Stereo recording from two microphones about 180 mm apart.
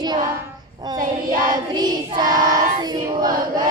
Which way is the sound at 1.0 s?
50° right (ahead or behind).